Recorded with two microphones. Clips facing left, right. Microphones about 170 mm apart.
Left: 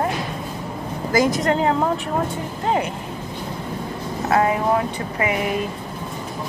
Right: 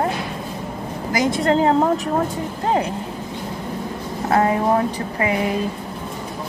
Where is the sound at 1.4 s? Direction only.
30° right (ahead or behind).